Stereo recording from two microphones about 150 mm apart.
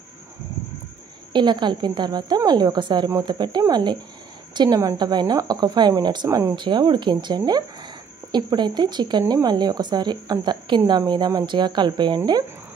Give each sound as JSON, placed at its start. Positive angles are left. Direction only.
{"t": 1.3, "sound": "a woman's voice", "side_deg": -30}